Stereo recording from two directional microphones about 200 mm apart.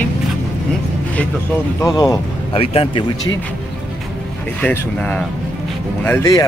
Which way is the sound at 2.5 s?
30° left (ahead or behind).